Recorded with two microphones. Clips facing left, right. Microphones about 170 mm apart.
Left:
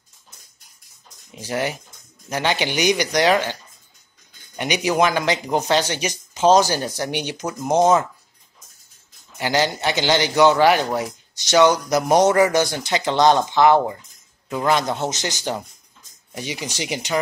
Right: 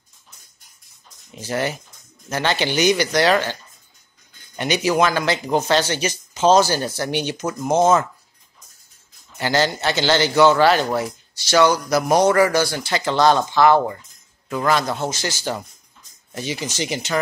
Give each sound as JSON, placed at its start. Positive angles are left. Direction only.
{"t": 1.4, "sound": "speech", "side_deg": 10}
{"t": 4.6, "sound": "speech", "side_deg": 15}
{"t": 9.4, "sound": "a man's voice", "side_deg": 15}